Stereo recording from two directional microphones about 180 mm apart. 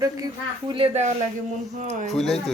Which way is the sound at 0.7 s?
30° right (ahead or behind).